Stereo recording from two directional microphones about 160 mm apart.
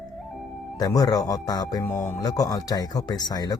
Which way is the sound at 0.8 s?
25° left (ahead or behind).